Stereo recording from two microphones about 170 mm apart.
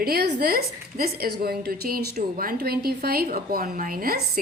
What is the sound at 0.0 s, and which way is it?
A woman's voice, 65° right (ahead or behind).